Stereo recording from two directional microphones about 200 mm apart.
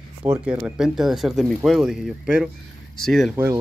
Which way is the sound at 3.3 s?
10° right (ahead or behind).